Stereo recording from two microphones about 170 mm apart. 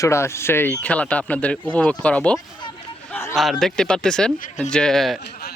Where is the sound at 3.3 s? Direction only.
Centre (ahead or behind).